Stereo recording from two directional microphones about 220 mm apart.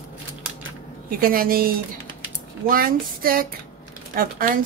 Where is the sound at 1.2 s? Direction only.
40° right (ahead or behind).